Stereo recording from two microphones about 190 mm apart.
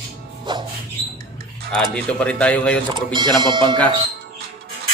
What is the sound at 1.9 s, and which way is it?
Speech, 5° left (ahead or behind).